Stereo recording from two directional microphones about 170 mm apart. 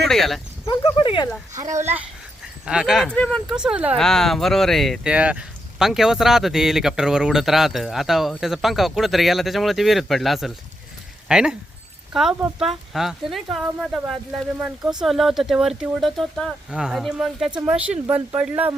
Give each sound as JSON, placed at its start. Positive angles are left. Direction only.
{"t": 0.1, "sound": "speech", "side_deg": 0}
{"t": 0.7, "sound": "speech", "side_deg": 30}
{"t": 1.5, "sound": "speech", "side_deg": -20}
{"t": 3.5, "sound": "speech", "side_deg": -5}